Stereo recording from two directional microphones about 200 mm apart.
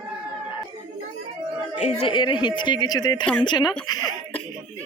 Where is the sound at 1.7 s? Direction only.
30° left (ahead or behind).